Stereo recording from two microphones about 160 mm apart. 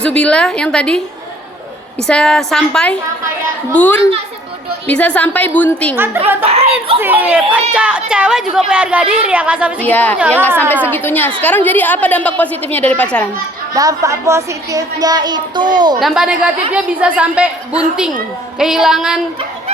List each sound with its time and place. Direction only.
0.0 s a woman's voice: 5° left (ahead or behind)
2.0 s a woman's voice: 5° left (ahead or behind)
6.4 s speech: 40° right (ahead or behind)
7.0 s a child's voice: 10° right (ahead or behind)
9.8 s a woman's voice: 10° left (ahead or behind)
10.2 s a child's voice: 15° right (ahead or behind)
10.9 s a woman's voice: 10° left (ahead or behind)
13.7 s a woman's voice: 20° right (ahead or behind)
16.0 s a woman's voice: 5° right (ahead or behind)